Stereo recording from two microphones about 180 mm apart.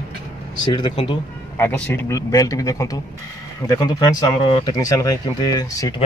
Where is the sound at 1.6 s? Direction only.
10° left (ahead or behind); by 4.7 s 30° left (ahead or behind).